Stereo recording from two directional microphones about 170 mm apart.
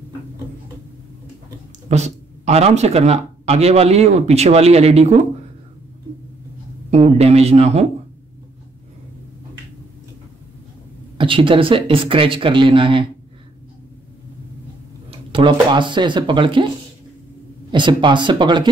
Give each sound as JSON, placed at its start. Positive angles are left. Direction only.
{"t": 1.9, "sound": "speech", "side_deg": -40}
{"t": 6.9, "sound": "speech", "side_deg": -40}
{"t": 11.1, "sound": "speech", "side_deg": -30}
{"t": 15.0, "sound": "speech", "side_deg": -30}
{"t": 17.6, "sound": "speech", "side_deg": -25}